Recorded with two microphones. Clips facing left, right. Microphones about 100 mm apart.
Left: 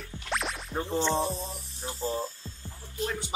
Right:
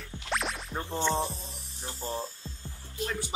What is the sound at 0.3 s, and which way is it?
Music, centre (ahead or behind).